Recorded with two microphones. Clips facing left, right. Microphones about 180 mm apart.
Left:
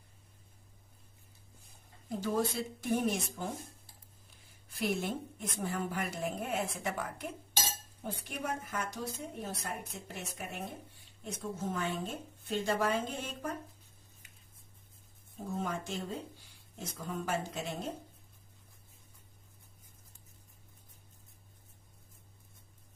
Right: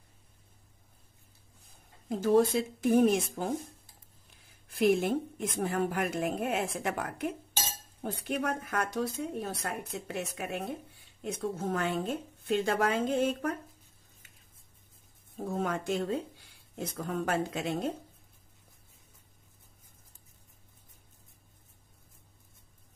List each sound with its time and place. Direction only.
2.0 s speech: 55° right (ahead or behind)
4.7 s a woman's voice: 55° right (ahead or behind); by 10.6 s 75° right (ahead or behind)
11.2 s a woman's voice: 60° right (ahead or behind)
15.4 s speech: 65° right (ahead or behind)
16.7 s a woman's voice: 65° right (ahead or behind)